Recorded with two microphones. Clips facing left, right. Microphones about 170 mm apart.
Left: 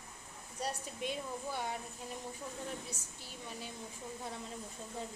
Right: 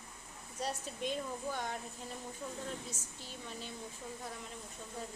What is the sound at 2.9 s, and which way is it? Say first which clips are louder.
Speech: right 1 dB; 10° left (ahead or behind).